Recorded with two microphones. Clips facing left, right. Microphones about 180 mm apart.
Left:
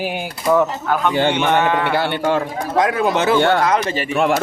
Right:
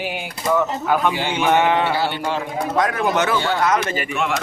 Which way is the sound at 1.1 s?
55° left (ahead or behind).